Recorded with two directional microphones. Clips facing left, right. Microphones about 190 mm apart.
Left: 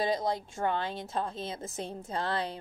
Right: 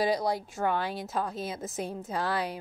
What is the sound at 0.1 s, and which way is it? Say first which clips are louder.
A woman's voice: right 2 dB; 20° left (ahead or behind).